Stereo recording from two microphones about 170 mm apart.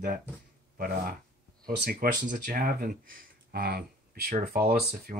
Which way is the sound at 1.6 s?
60° right (ahead or behind).